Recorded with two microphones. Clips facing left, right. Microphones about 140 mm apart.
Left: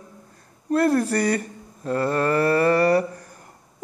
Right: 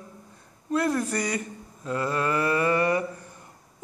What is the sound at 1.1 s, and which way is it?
Mantra, 60° left (ahead or behind).